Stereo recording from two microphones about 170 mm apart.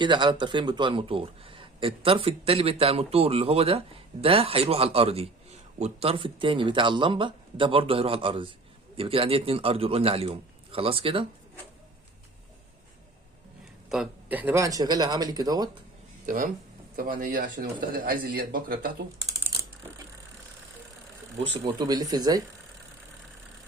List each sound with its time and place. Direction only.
0.0 s speech: 25° right (ahead or behind)
13.9 s speech: 5° right (ahead or behind); by 15.7 s 25° right (ahead or behind)
16.2 s speech: 55° right (ahead or behind)
21.6 s speech: 25° right (ahead or behind)